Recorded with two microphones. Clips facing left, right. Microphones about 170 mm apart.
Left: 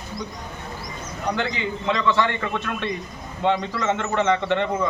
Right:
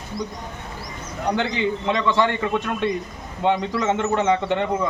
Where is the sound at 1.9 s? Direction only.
15° right (ahead or behind).